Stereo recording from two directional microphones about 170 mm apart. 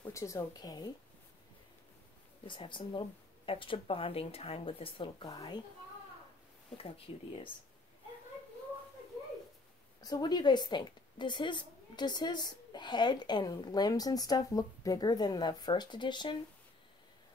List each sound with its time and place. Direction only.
0.0 s a woman's voice: 20° left (ahead or behind)
2.4 s speech: 30° left (ahead or behind)
10.0 s a woman's voice: 25° left (ahead or behind)